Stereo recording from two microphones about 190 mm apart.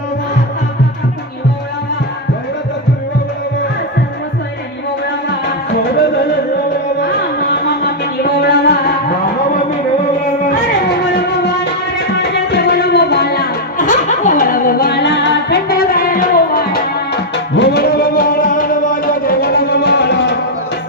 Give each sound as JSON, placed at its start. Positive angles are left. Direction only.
{"t": 7.0, "sound": "music", "side_deg": 60}
{"t": 12.3, "sound": "music", "side_deg": 60}